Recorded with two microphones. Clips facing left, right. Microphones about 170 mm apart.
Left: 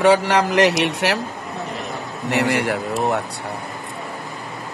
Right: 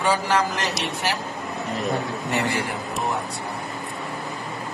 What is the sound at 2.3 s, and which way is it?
Speech, 70° left (ahead or behind).